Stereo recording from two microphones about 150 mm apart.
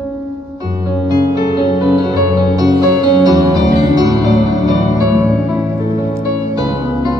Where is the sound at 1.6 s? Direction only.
25° right (ahead or behind).